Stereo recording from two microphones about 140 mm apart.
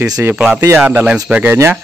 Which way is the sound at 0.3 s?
5° right (ahead or behind).